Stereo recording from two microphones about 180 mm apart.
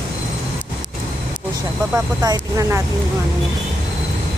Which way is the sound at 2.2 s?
20° right (ahead or behind).